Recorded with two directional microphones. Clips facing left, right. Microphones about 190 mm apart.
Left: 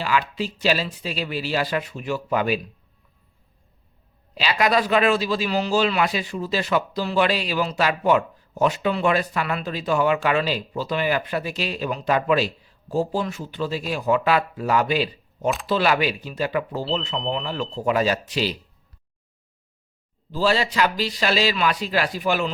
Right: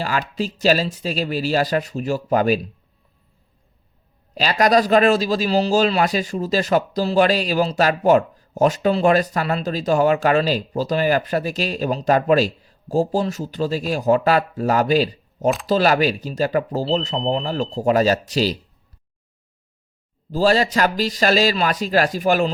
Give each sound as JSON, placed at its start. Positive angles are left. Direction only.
{"t": 0.0, "sound": "speech", "side_deg": -40}
{"t": 4.4, "sound": "speech", "side_deg": -40}
{"t": 20.3, "sound": "speech", "side_deg": -45}